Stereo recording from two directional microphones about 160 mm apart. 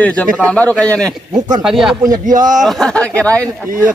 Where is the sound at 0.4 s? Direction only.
10° left (ahead or behind).